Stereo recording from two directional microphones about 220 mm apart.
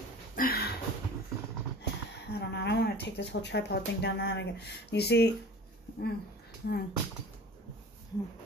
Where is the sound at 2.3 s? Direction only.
50° left (ahead or behind).